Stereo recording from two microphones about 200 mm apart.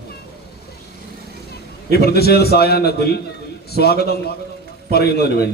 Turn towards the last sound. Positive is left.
turn(degrees=55)  # may be behind; listen again after turning